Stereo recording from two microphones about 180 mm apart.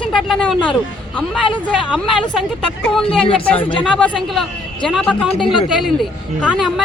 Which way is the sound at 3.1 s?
30° left (ahead or behind).